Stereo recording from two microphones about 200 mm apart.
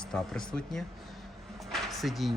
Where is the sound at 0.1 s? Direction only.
5° left (ahead or behind).